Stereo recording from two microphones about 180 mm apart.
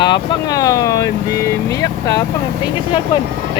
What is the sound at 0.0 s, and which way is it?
Speech, 20° left (ahead or behind).